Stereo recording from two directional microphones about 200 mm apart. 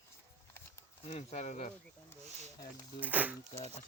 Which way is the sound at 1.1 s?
30° left (ahead or behind).